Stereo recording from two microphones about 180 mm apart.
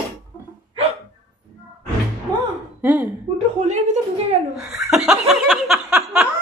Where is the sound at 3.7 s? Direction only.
40° right (ahead or behind).